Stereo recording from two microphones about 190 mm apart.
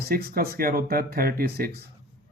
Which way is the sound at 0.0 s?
50° right (ahead or behind).